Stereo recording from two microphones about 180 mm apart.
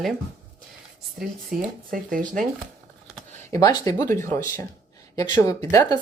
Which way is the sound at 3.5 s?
20° left (ahead or behind).